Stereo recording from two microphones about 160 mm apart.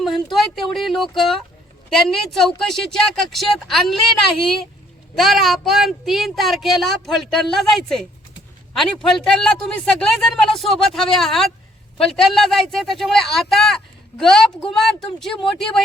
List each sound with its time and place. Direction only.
0.0 s speech: centre (ahead or behind)